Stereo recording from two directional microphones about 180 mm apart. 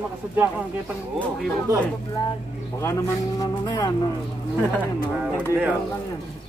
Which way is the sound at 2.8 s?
20° left (ahead or behind).